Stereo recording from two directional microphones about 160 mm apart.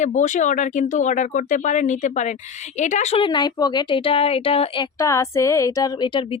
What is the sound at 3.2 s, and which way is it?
Speech, 30° left (ahead or behind).